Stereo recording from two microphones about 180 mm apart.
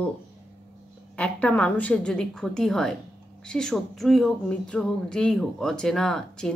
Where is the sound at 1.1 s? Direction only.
5° left (ahead or behind).